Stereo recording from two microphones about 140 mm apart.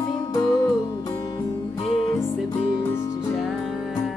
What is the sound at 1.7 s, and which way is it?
Music, 45° left (ahead or behind).